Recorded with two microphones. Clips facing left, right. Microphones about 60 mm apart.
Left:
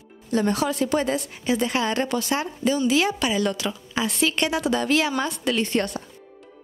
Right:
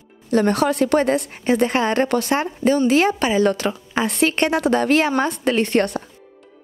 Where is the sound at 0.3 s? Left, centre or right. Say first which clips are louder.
Right 5 dB; right.